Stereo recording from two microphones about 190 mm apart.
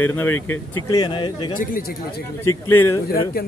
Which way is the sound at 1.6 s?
45° left (ahead or behind).